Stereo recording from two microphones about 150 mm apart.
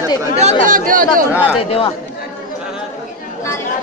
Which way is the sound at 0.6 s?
65° right (ahead or behind).